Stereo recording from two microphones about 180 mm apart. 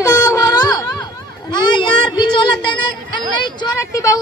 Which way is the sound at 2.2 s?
25° left (ahead or behind).